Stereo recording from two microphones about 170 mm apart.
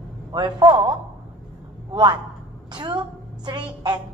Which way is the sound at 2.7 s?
30° right (ahead or behind).